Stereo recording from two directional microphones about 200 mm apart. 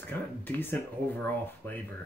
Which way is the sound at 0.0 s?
10° left (ahead or behind).